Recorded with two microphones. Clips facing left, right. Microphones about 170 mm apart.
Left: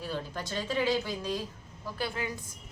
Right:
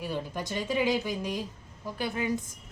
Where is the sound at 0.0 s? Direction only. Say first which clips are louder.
Right 2 dB; 15° right (ahead or behind).